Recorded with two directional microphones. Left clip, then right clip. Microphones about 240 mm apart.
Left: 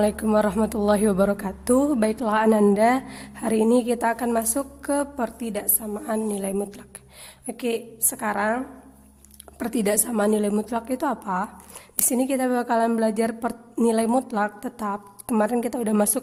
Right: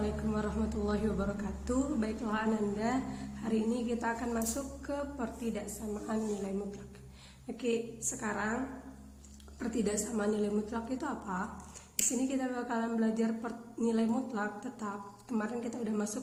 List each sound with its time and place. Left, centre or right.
0.0 s a woman's voice: left
7.4 s a woman's voice: left
9.6 s a woman's voice: left